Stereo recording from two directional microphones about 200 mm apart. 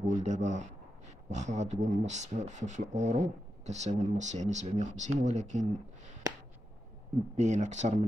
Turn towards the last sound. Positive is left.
turn(degrees=-35)  # may be behind; listen again after turning